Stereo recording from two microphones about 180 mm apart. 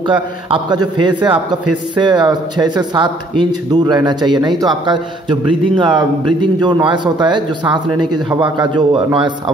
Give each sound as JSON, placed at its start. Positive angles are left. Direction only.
{"t": 0.5, "sound": "a man's voice", "side_deg": -25}